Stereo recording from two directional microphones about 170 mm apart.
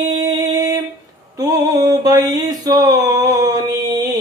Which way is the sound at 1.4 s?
20° right (ahead or behind).